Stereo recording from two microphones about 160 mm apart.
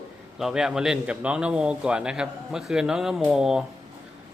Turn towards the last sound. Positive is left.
turn(degrees=-5)  # may be behind; listen again after turning